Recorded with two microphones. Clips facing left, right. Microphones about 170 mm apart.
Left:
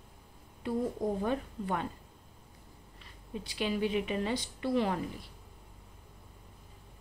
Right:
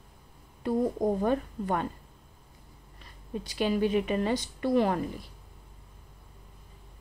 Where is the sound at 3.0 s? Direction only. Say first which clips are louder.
Right 5 dB; 45° right (ahead or behind).